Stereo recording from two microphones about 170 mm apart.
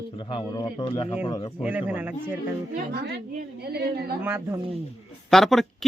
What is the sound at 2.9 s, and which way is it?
A woman's voice, 75° right (ahead or behind).